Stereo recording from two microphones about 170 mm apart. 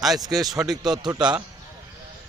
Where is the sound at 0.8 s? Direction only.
25° right (ahead or behind).